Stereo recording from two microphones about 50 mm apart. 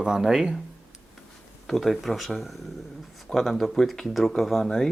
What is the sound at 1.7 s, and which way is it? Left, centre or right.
Speech, centre.